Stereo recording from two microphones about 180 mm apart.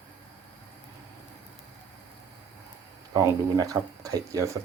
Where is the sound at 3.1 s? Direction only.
20° right (ahead or behind).